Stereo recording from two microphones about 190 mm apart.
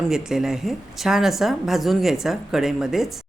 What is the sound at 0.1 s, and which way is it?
A woman's voice, 5° right (ahead or behind).